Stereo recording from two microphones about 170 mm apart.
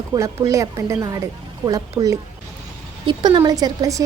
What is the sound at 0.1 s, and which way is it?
A woman's voice, 20° right (ahead or behind).